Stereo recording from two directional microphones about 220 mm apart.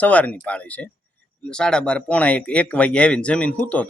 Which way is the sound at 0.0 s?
5° left (ahead or behind).